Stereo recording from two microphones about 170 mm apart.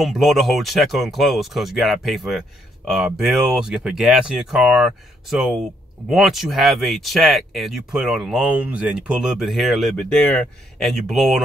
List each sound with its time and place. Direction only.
0.0 s speech: centre (ahead or behind)